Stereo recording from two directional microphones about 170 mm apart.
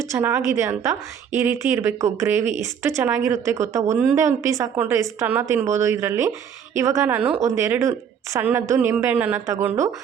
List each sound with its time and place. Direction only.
0.1 s a woman's voice: 15° right (ahead or behind)